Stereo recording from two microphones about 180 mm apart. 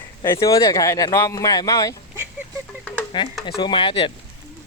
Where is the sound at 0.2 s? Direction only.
20° left (ahead or behind).